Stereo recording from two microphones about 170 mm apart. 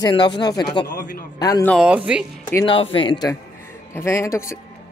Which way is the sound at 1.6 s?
5° right (ahead or behind).